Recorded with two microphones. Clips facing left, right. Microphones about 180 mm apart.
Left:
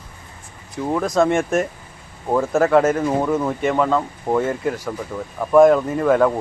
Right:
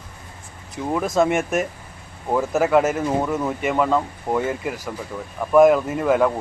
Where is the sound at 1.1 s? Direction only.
5° right (ahead or behind).